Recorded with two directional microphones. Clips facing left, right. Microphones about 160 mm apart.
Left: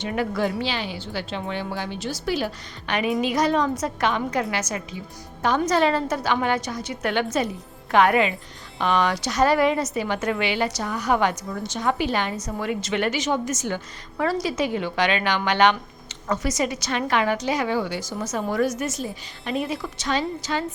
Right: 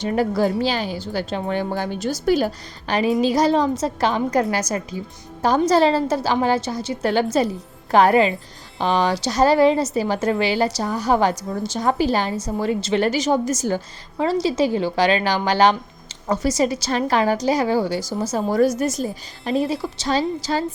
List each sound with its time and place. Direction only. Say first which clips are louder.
0.0 s a woman's voice: right 5 dB; 35° right (ahead or behind)
14.2 s a woman's voice: right 4 dB; 25° right (ahead or behind)